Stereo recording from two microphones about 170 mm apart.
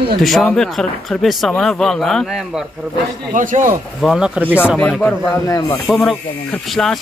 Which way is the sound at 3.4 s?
50° right (ahead or behind).